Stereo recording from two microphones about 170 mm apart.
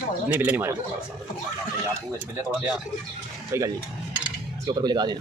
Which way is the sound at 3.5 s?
15° right (ahead or behind).